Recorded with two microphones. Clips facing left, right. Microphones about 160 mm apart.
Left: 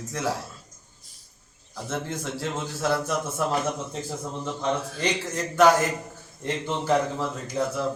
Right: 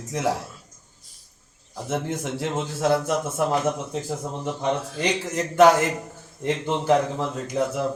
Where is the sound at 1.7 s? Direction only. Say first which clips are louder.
Right 4 dB; 20° right (ahead or behind).